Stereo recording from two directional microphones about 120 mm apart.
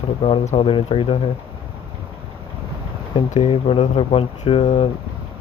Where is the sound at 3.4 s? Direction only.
50° left (ahead or behind).